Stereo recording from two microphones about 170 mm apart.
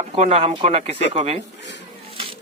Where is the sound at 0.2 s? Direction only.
40° right (ahead or behind).